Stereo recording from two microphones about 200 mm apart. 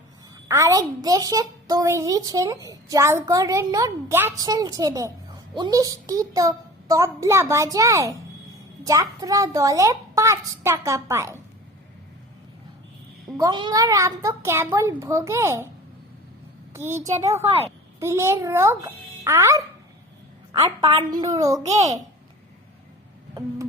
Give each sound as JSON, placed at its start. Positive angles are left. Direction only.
{"t": 0.4, "sound": "a woman's voice", "side_deg": -15}
{"t": 13.3, "sound": "a woman's voice", "side_deg": -20}
{"t": 16.7, "sound": "a woman's voice", "side_deg": -15}
{"t": 17.4, "sound": "a woman's voice", "side_deg": -30}
{"t": 18.0, "sound": "a woman's voice", "side_deg": -15}
{"t": 20.7, "sound": "a woman's voice", "side_deg": -25}